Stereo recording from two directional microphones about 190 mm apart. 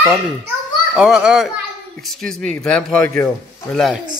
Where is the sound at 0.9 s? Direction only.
5° right (ahead or behind).